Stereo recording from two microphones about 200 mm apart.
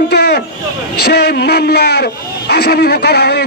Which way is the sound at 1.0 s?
55° left (ahead or behind).